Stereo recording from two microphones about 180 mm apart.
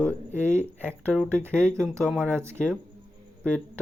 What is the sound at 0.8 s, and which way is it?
Speech, 10° left (ahead or behind).